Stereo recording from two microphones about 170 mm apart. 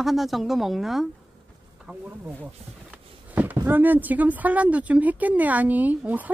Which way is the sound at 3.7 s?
10° right (ahead or behind).